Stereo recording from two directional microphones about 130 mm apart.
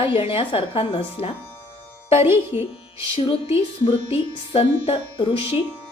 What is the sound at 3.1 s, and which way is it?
A woman's voice, 45° left (ahead or behind).